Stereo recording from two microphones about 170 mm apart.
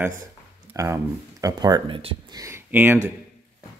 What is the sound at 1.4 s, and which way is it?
Speech, 25° right (ahead or behind).